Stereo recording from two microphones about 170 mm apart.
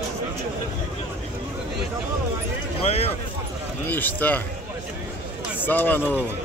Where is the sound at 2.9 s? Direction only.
35° left (ahead or behind).